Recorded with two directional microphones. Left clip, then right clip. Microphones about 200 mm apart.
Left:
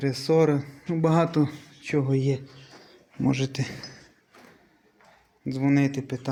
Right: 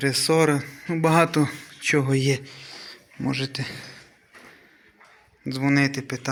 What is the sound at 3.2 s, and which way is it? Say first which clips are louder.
Speech: even; 30° left (ahead or behind).